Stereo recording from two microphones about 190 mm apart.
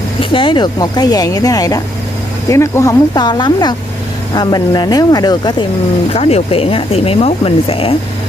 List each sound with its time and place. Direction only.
0.2 s speech: 25° left (ahead or behind)